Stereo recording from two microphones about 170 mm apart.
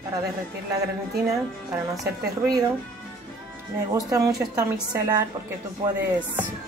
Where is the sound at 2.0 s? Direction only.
20° right (ahead or behind).